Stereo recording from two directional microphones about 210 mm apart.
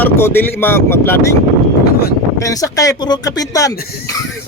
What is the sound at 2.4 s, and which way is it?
Speech, 15° left (ahead or behind).